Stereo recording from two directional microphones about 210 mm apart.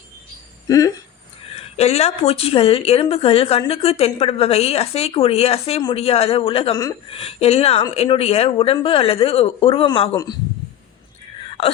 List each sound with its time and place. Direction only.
0.7 s speech: 15° left (ahead or behind)
1.5 s a woman's voice: 30° left (ahead or behind)